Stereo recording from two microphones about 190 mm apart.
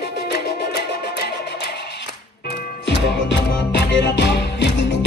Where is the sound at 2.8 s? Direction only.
65° left (ahead or behind).